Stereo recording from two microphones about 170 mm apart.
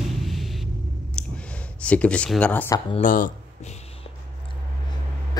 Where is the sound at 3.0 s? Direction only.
55° left (ahead or behind).